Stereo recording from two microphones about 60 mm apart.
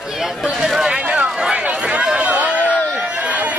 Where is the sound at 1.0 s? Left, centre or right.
Centre.